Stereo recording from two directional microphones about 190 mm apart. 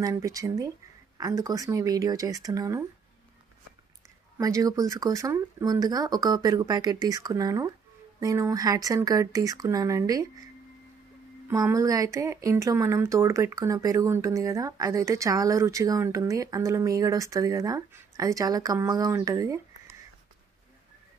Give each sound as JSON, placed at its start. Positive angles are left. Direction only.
{"t": 0.0, "sound": "speech", "side_deg": -15}
{"t": 4.4, "sound": "speech", "side_deg": -20}
{"t": 11.4, "sound": "speech", "side_deg": -15}